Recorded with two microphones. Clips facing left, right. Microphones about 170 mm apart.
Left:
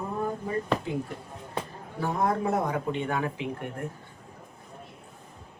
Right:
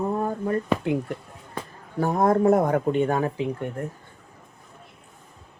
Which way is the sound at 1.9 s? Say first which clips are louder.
Right 7 dB; 45° right (ahead or behind).